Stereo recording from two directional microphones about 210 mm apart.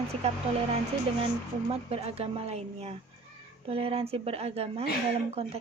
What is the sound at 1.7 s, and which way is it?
Speech, 30° right (ahead or behind).